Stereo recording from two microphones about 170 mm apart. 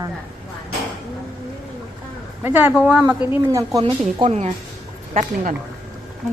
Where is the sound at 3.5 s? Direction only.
25° right (ahead or behind).